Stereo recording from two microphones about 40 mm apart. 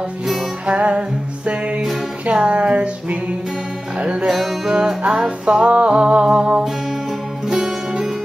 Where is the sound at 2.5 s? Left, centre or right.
Right.